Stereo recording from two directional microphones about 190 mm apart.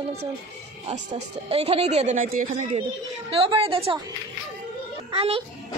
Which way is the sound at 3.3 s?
30° right (ahead or behind).